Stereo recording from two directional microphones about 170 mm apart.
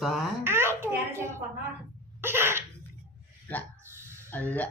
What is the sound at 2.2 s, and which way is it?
Sneeze, 15° right (ahead or behind).